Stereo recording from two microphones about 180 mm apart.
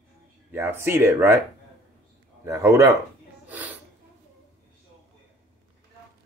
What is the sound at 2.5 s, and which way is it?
Speech, 15° right (ahead or behind).